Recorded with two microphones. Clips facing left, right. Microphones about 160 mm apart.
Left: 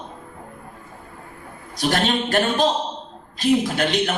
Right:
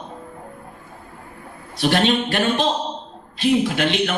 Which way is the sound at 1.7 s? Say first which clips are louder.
Right 3 dB; 40° left (ahead or behind).